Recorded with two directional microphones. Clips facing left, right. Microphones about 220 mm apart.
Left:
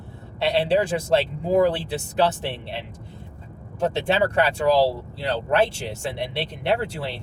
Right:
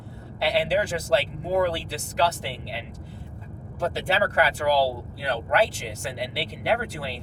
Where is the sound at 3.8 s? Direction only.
25° left (ahead or behind).